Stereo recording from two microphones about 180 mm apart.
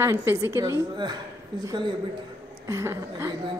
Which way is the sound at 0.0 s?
15° right (ahead or behind).